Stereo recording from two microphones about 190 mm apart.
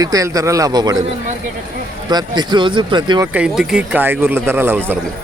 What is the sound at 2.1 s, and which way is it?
Speech, 20° right (ahead or behind).